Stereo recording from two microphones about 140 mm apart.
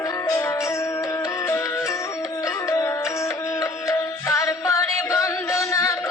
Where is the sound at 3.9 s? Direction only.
20° left (ahead or behind).